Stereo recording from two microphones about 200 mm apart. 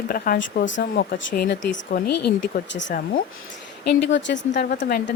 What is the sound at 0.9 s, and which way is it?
Speech, 50° left (ahead or behind).